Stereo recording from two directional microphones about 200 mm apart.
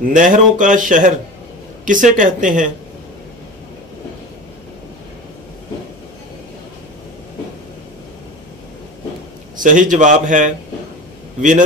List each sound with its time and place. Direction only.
0.0 s speech: 40° right (ahead or behind)
9.6 s speech: 40° right (ahead or behind)